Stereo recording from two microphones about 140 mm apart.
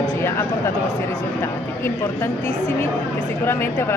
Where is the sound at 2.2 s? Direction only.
15° left (ahead or behind).